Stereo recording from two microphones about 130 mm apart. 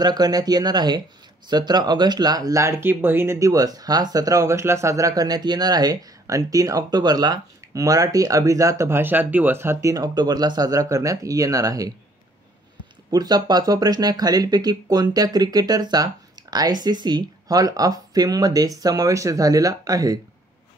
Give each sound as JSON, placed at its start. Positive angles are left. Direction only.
{"t": 0.0, "sound": "speech", "side_deg": -30}
{"t": 13.1, "sound": "speech", "side_deg": -30}